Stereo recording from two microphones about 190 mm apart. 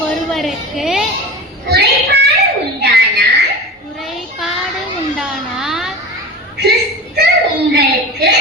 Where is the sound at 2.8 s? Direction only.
60° right (ahead or behind).